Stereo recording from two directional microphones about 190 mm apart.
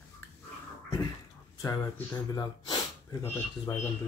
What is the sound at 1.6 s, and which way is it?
Speech, 20° left (ahead or behind).